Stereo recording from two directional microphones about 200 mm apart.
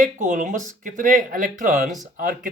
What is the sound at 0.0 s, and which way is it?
Speech, 40° right (ahead or behind).